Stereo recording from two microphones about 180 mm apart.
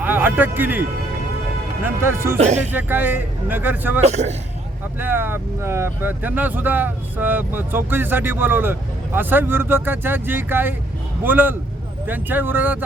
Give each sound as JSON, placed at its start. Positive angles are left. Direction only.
{"t": 0.0, "sound": "speech", "side_deg": -10}
{"t": 1.8, "sound": "speech", "side_deg": -15}
{"t": 4.0, "sound": "a man's voice", "side_deg": -40}
{"t": 4.9, "sound": "speech", "side_deg": -10}